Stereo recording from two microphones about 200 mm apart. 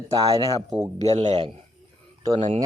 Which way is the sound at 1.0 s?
30° right (ahead or behind).